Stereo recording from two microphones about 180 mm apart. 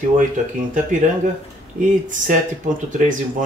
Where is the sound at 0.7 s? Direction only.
45° right (ahead or behind).